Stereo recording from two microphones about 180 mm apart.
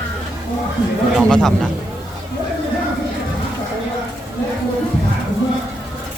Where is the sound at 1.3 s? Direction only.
Centre (ahead or behind).